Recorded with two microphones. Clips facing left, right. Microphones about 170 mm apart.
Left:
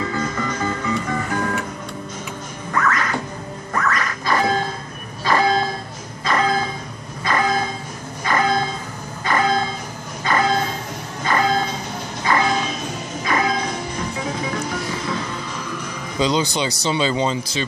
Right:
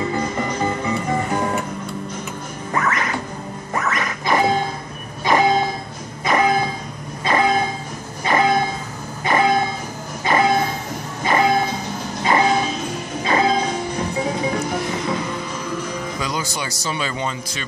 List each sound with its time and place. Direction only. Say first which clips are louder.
0.0 s music: right 2 dB; 25° right (ahead or behind)
2.7 s music: left 1 dB; 20° right (ahead or behind)
5.2 s train: right 2 dB; 20° right (ahead or behind)
6.2 s music: right 2 dB; 20° right (ahead or behind)
7.2 s train: right 2 dB; 20° right (ahead or behind)
11.2 s a sound: right 2 dB; 20° right (ahead or behind)
12.2 s vehicle: right 2 dB; 20° right (ahead or behind)
13.2 s music: right 3 dB; 25° right (ahead or behind)
16.2 s speech: left 11 dB; 25° left (ahead or behind)